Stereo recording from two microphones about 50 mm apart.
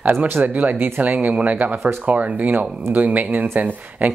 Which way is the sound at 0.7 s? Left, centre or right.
Right.